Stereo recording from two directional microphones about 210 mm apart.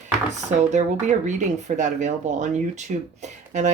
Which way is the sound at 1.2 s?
35° right (ahead or behind).